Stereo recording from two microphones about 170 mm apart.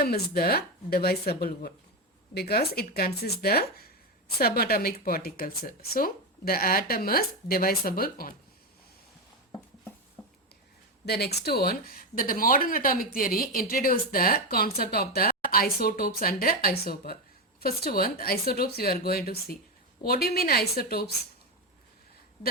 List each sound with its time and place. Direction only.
0.0 s speech: 65° left (ahead or behind)
10.2 s a sound: 10° left (ahead or behind)
11.0 s speech: 70° left (ahead or behind)